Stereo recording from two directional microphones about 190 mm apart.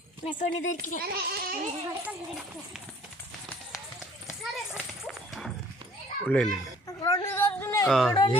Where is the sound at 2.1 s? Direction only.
5° right (ahead or behind).